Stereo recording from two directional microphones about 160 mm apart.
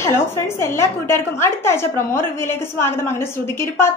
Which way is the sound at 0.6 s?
15° left (ahead or behind).